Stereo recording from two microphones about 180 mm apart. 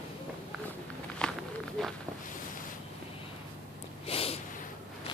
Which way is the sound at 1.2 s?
5° left (ahead or behind).